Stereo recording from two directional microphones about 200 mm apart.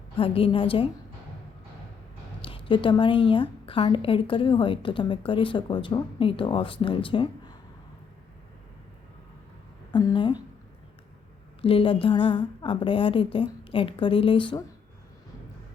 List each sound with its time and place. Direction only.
0.2 s a woman's voice: 25° left (ahead or behind)
2.4 s a woman's voice: 25° left (ahead or behind)
9.9 s a sound: 20° left (ahead or behind)
11.6 s a woman's voice: 25° left (ahead or behind)